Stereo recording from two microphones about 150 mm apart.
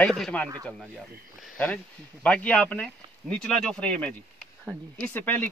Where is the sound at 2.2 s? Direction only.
10° left (ahead or behind).